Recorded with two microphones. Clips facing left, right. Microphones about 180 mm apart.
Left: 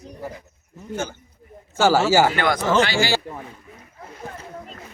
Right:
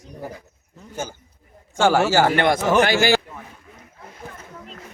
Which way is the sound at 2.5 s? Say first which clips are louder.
Right 2 dB; 20° right (ahead or behind).